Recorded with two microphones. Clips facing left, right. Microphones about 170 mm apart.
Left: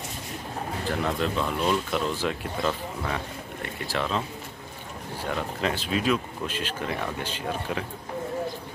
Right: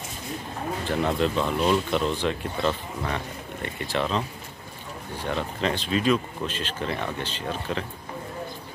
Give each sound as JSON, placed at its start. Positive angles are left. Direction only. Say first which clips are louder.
{"t": 0.8, "sound": "speech", "louder": "right 3 dB", "side_deg": 0}
{"t": 5.2, "sound": "speech", "louder": "right 1 dB", "side_deg": 5}